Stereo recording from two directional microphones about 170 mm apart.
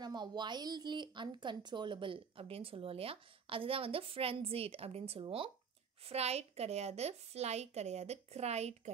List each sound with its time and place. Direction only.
0.0 s a woman's voice: 25° right (ahead or behind); by 8.9 s 40° right (ahead or behind)